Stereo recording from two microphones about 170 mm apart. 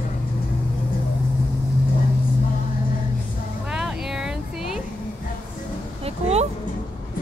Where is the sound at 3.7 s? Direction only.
5° right (ahead or behind).